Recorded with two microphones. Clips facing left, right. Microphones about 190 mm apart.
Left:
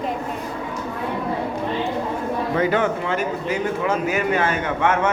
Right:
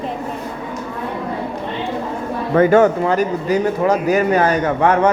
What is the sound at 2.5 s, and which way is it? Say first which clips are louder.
A man's voice: right 10 dB; 50° right (ahead or behind).